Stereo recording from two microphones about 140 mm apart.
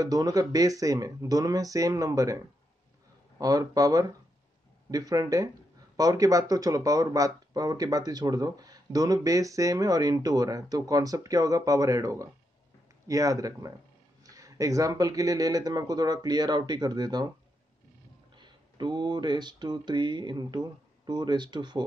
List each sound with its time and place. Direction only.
0.0 s speech: 25° right (ahead or behind)
18.3 s speech: 30° right (ahead or behind)